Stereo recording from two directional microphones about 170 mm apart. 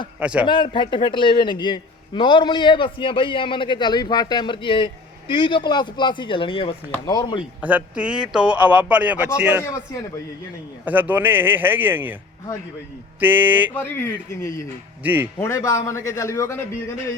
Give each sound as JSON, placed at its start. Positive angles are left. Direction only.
{"t": 0.2, "sound": "a man's voice", "side_deg": -5}
{"t": 0.4, "sound": "a man's voice", "side_deg": 30}
{"t": 7.6, "sound": "a man's voice", "side_deg": -10}
{"t": 10.8, "sound": "a man's voice", "side_deg": -10}
{"t": 13.1, "sound": "a man's voice", "side_deg": -10}
{"t": 13.7, "sound": "a man's voice", "side_deg": 15}
{"t": 15.0, "sound": "a man's voice", "side_deg": -10}
{"t": 15.4, "sound": "a man's voice", "side_deg": 15}